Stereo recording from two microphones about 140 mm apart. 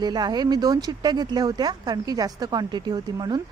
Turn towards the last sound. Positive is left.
turn(degrees=-30)  # may be behind; listen again after turning